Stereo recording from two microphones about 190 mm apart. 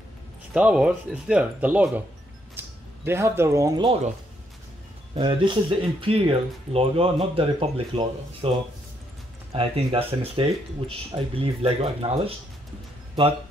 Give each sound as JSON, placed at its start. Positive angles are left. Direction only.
{"t": 0.5, "sound": "speech", "side_deg": -5}
{"t": 3.1, "sound": "speech", "side_deg": -15}
{"t": 5.1, "sound": "speech", "side_deg": -25}
{"t": 9.5, "sound": "speech", "side_deg": -30}